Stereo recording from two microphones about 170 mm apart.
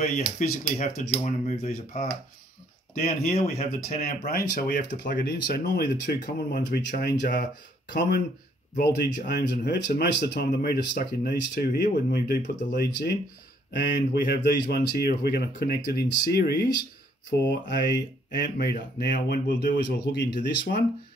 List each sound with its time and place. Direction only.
0.0 s speech: 40° left (ahead or behind)
3.0 s speech: 40° left (ahead or behind)
4.3 s speech: 65° left (ahead or behind)
17.3 s mantra: 90° left
18.4 s speech: 65° left (ahead or behind)